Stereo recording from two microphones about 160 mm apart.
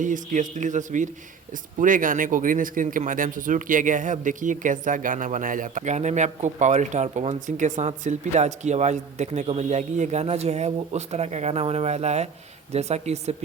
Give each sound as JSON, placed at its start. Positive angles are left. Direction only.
{"t": 0.0, "sound": "speech", "side_deg": -50}